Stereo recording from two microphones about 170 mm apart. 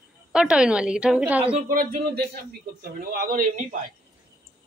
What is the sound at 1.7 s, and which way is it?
Speech, 60° right (ahead or behind).